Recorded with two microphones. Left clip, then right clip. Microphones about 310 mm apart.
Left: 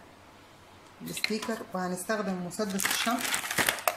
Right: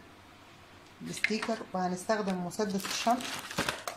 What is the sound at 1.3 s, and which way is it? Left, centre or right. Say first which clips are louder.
Speech: even; centre.